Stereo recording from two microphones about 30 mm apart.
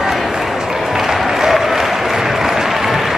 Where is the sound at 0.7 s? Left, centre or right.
Centre.